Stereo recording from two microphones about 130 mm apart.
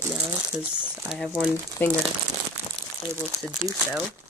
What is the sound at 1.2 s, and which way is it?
Speech, centre (ahead or behind).